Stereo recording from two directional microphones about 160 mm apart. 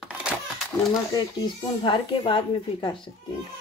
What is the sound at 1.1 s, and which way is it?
Speech, 30° left (ahead or behind).